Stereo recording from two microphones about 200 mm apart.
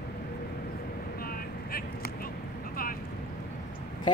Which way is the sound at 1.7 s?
50° left (ahead or behind).